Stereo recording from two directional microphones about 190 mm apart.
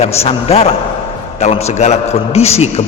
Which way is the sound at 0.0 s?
30° left (ahead or behind).